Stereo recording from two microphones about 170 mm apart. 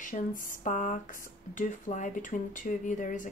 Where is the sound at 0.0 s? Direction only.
50° left (ahead or behind).